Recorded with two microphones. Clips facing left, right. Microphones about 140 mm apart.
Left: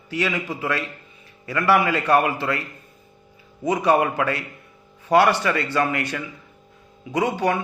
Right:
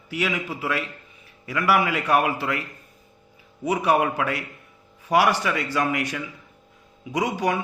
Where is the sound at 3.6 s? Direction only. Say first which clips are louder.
Left 2 dB; 10° right (ahead or behind).